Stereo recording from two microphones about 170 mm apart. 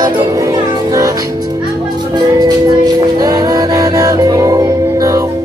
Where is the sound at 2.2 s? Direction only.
25° right (ahead or behind).